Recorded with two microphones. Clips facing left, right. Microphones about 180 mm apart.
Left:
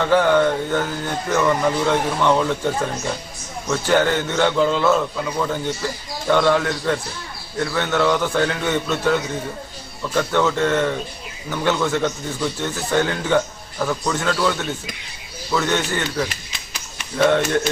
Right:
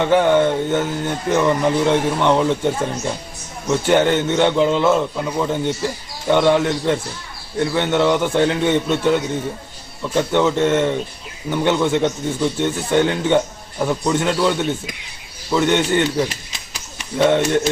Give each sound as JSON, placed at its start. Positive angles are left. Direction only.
{"t": 0.0, "sound": "a man's voice", "side_deg": -20}